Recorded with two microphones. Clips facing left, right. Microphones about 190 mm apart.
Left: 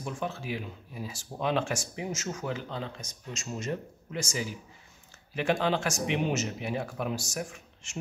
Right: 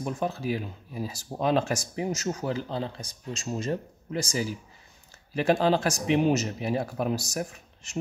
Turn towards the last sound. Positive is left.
turn(degrees=-35)  # may be behind; listen again after turning